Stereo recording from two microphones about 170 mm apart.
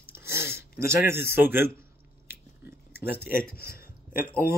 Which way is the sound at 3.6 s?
60° left (ahead or behind).